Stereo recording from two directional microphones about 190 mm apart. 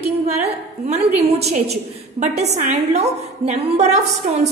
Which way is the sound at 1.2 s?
35° right (ahead or behind).